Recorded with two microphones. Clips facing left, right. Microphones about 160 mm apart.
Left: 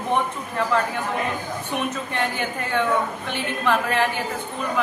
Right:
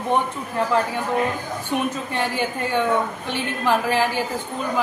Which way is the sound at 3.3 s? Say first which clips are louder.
Right 1 dB; 30° right (ahead or behind).